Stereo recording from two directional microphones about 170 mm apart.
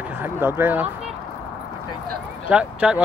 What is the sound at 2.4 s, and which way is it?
Speech, 5° right (ahead or behind).